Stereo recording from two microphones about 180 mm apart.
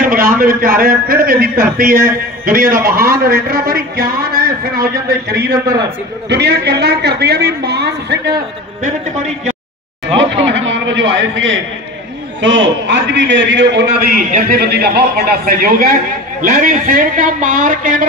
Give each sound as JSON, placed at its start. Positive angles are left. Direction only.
{"t": 0.4, "sound": "a woman's voice", "side_deg": -55}
{"t": 5.8, "sound": "a man's voice", "side_deg": -70}
{"t": 10.1, "sound": "a man's voice", "side_deg": -90}
{"t": 14.1, "sound": "a man's voice", "side_deg": -55}